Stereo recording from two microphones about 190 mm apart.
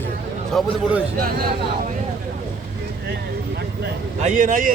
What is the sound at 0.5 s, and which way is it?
Speech, centre (ahead or behind).